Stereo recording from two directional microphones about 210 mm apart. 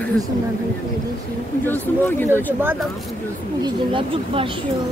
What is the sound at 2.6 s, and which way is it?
Speech, 10° right (ahead or behind).